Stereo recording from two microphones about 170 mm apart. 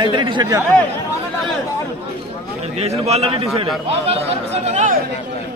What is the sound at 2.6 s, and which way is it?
A man's voice, 40° right (ahead or behind).